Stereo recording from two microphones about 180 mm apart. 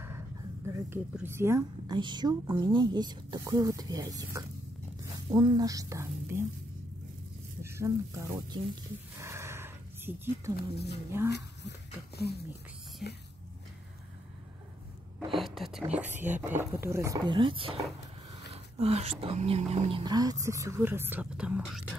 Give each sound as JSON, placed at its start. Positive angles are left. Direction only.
{"t": 0.8, "sound": "a woman's voice", "side_deg": -10}
{"t": 7.6, "sound": "speech", "side_deg": -15}
{"t": 9.2, "sound": "a sound", "side_deg": -15}
{"t": 10.5, "sound": "speech", "side_deg": 65}
{"t": 13.0, "sound": "speech", "side_deg": 0}
{"t": 15.3, "sound": "a woman's voice", "side_deg": 0}